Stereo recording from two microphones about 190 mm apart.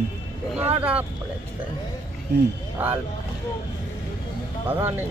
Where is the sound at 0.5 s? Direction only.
30° right (ahead or behind).